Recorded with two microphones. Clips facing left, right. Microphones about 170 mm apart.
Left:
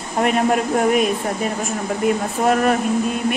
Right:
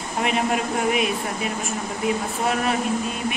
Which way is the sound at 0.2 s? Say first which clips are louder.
Left 5 dB; 50° left (ahead or behind).